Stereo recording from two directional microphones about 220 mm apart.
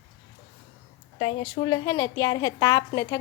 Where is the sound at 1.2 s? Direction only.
20° left (ahead or behind).